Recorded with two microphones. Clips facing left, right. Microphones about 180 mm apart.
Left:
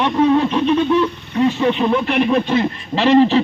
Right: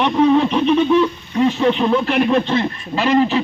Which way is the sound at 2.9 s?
30° left (ahead or behind).